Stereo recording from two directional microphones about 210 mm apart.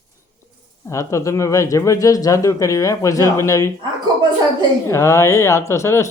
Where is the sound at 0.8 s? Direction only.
15° left (ahead or behind).